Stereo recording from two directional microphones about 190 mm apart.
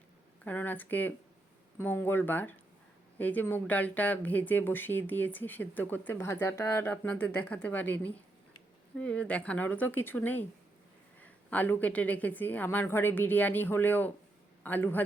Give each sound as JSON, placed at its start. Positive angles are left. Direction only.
{"t": 0.4, "sound": "a woman's voice", "side_deg": 10}